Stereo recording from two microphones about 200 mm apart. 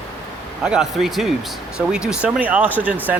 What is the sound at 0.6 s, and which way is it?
Speech, centre (ahead or behind).